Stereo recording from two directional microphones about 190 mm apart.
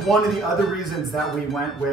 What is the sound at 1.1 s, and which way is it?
Speech, centre (ahead or behind).